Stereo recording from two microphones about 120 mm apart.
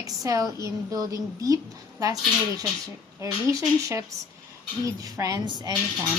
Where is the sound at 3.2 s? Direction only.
25° right (ahead or behind).